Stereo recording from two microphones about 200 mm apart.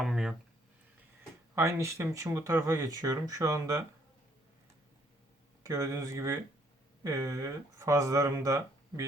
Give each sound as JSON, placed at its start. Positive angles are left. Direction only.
{"t": 0.0, "sound": "a sound", "side_deg": 0}
{"t": 1.5, "sound": "speech", "side_deg": -15}
{"t": 5.6, "sound": "speech", "side_deg": -15}